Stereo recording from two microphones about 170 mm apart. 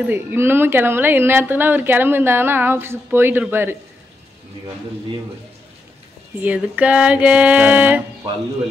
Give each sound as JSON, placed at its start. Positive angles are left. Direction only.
{"t": 0.1, "sound": "a woman's voice", "side_deg": -10}
{"t": 6.4, "sound": "a woman's voice", "side_deg": -10}